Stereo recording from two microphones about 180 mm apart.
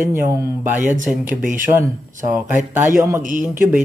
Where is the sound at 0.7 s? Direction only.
45° right (ahead or behind).